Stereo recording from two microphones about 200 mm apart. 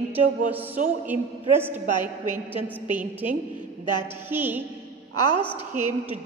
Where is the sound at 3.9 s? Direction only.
20° left (ahead or behind).